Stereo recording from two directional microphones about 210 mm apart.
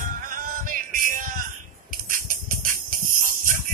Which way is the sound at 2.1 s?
40° right (ahead or behind).